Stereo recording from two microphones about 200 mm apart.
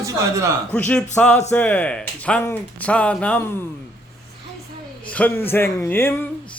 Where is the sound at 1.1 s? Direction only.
5° left (ahead or behind).